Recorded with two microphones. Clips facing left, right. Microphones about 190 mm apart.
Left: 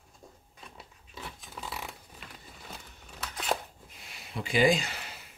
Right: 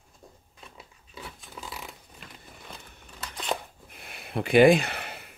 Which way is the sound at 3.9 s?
55° right (ahead or behind).